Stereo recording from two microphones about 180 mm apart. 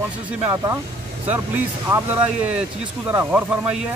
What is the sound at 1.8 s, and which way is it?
Speech, 10° right (ahead or behind).